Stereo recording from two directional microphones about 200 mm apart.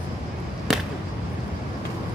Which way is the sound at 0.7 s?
Centre (ahead or behind).